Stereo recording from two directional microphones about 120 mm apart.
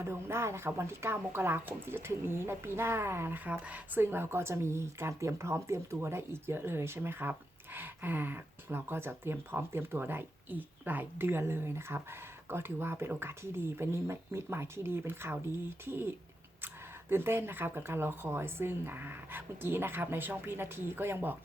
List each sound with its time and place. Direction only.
0.0 s speech: 20° right (ahead or behind)